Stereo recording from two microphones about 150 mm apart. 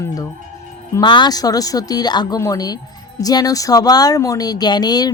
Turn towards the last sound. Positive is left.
turn(degrees=25)  # may be behind; listen again after turning